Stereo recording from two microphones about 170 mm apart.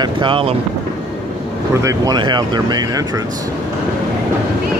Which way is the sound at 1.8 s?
20° right (ahead or behind).